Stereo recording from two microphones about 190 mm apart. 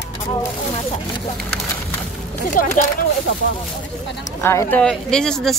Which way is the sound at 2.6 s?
45° left (ahead or behind).